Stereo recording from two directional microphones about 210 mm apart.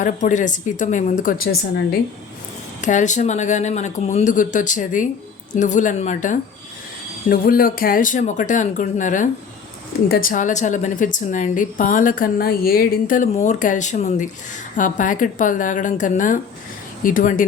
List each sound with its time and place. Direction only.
0.0 s a woman's voice: 35° left (ahead or behind)
2.8 s a woman's voice: 35° left (ahead or behind)